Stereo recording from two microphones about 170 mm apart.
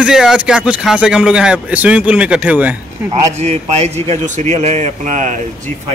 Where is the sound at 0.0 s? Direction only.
5° right (ahead or behind).